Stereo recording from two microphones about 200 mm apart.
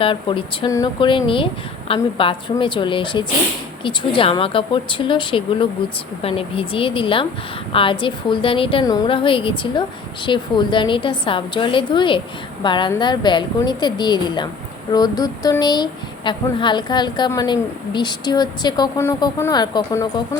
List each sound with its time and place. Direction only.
0.0 s speech: 25° left (ahead or behind)